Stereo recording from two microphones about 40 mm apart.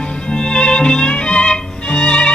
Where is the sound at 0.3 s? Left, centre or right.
Left.